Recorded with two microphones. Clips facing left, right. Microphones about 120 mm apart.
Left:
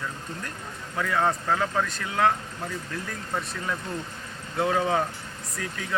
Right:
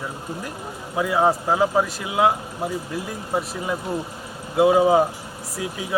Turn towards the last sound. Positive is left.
turn(degrees=-10)  # may be behind; listen again after turning